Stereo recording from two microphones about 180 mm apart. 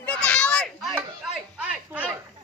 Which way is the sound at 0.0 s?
5° left (ahead or behind).